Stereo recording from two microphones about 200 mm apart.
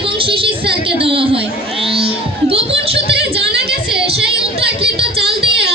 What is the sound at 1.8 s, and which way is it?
Music, 30° right (ahead or behind).